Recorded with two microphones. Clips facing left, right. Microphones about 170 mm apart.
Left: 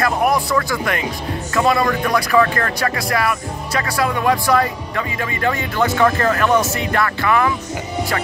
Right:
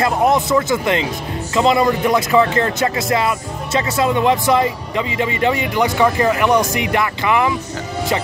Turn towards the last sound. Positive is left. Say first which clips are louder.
# even
turn(degrees=-20)  # may be behind; listen again after turning